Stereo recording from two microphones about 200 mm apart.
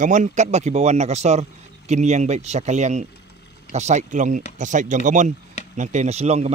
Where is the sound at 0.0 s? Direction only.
35° right (ahead or behind).